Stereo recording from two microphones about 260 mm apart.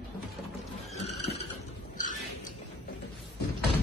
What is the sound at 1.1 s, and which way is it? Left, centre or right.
Vehicle, centre.